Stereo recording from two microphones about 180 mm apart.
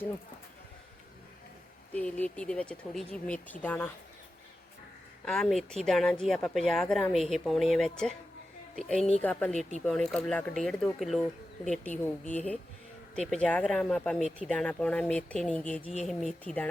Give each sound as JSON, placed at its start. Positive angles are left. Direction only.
{"t": 1.9, "sound": "speech", "side_deg": 10}
{"t": 5.2, "sound": "a woman's voice", "side_deg": 0}
{"t": 12.2, "sound": "speech", "side_deg": 40}
{"t": 13.1, "sound": "speech", "side_deg": 5}